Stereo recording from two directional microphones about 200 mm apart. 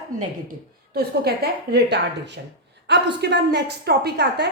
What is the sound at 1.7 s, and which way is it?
A woman's voice, 60° right (ahead or behind).